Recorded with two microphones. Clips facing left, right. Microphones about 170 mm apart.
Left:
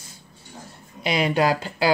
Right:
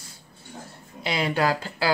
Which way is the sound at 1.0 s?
20° left (ahead or behind).